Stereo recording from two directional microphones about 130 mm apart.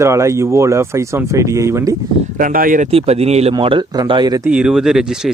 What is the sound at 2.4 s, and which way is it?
Speech, 90° right.